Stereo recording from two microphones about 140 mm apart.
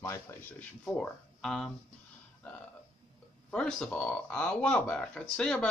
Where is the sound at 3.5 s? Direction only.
5° left (ahead or behind).